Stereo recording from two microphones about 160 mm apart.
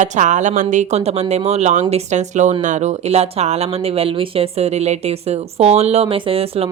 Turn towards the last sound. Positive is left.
turn(degrees=-40)  # may be behind; listen again after turning